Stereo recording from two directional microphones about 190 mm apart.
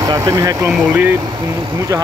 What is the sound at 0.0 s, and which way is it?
Speech, 20° right (ahead or behind).